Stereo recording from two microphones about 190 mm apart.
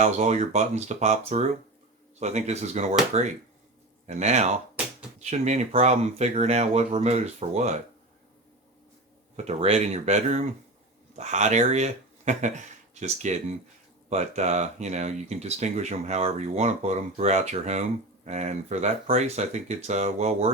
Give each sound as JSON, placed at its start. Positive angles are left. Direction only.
{"t": 0.0, "sound": "speech", "side_deg": -35}
{"t": 9.3, "sound": "speech", "side_deg": -35}